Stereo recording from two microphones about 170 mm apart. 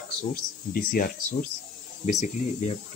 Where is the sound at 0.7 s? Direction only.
55° left (ahead or behind).